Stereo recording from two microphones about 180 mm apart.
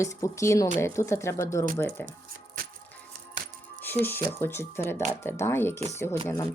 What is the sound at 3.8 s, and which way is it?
Speech, 10° left (ahead or behind).